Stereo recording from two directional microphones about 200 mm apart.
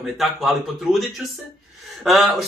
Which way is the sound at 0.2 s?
Centre (ahead or behind).